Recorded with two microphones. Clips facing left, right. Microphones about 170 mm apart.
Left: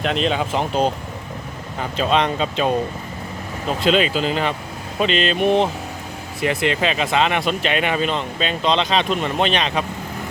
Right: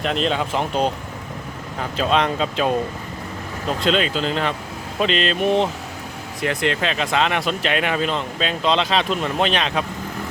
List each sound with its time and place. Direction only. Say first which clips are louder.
0.0 s speech: left 1 dB; centre (ahead or behind)